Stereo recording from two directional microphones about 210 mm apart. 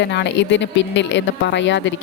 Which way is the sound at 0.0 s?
55° left (ahead or behind).